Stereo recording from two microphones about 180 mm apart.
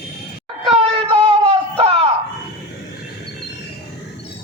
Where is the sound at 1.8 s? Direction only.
30° right (ahead or behind).